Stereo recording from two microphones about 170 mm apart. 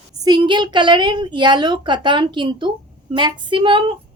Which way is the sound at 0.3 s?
25° right (ahead or behind).